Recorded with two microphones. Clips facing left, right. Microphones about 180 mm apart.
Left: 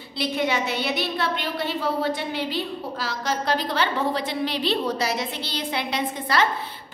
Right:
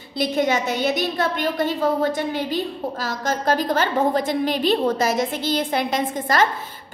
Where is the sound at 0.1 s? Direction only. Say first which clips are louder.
Right 4 dB; 45° right (ahead or behind).